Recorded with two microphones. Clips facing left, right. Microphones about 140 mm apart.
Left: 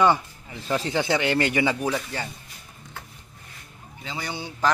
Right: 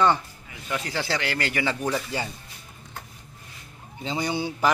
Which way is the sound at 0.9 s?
20° left (ahead or behind).